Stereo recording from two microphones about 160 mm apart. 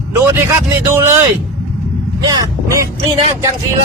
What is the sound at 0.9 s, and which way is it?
Speech, 15° right (ahead or behind).